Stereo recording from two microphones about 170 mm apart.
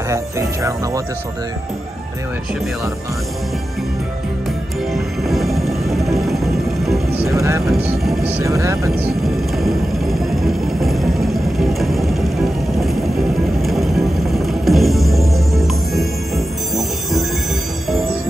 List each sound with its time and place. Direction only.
0.1 s speech: 20° right (ahead or behind)
4.9 s music: centre (ahead or behind)
7.3 s speech: 15° right (ahead or behind)
8.0 s speech: centre (ahead or behind)
8.4 s speech: 15° right (ahead or behind)
10.4 s a sound: centre (ahead or behind)
13.6 s music: centre (ahead or behind)